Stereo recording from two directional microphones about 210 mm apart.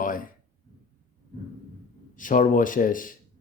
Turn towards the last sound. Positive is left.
turn(degrees=40)  # may be behind; listen again after turning